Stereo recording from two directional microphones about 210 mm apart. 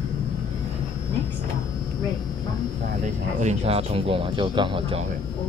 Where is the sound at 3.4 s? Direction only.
30° right (ahead or behind).